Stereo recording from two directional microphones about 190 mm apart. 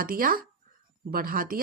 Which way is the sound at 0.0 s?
50° right (ahead or behind).